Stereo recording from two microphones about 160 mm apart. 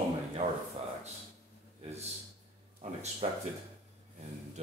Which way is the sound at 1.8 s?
40° right (ahead or behind).